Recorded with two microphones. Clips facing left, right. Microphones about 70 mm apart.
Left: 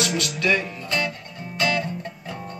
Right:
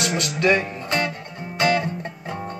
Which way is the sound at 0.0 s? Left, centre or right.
Right.